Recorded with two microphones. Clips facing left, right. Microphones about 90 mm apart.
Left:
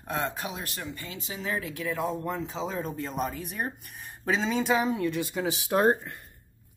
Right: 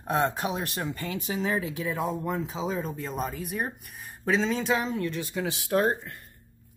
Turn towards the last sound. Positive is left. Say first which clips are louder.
# left 2 dB
turn(degrees=20)  # may be behind; listen again after turning